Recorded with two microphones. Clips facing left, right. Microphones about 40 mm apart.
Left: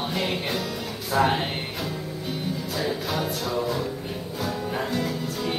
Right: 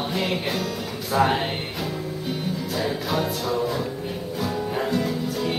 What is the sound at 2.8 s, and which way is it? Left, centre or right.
Music, centre.